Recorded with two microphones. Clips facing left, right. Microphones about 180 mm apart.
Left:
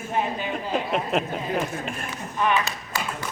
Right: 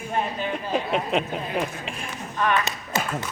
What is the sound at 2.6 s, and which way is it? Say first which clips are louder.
Speech: right 3 dB; 20° right (ahead or behind).